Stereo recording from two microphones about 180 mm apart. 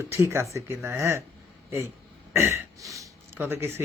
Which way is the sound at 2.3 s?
15° right (ahead or behind).